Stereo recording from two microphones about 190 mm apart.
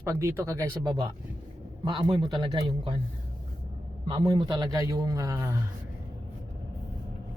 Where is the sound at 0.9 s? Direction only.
25° right (ahead or behind).